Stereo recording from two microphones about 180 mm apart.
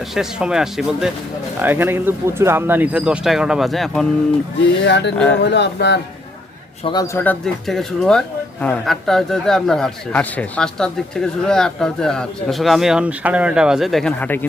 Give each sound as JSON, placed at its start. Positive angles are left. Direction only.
{"t": 0.1, "sound": "speech", "side_deg": -5}
{"t": 4.8, "sound": "speech", "side_deg": 75}
{"t": 5.1, "sound": "speech", "side_deg": 5}
{"t": 5.4, "sound": "speech", "side_deg": 70}
{"t": 6.8, "sound": "speech", "side_deg": 20}